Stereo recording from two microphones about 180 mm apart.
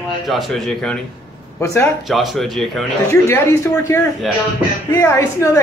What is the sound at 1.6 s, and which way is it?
Speech, 15° left (ahead or behind).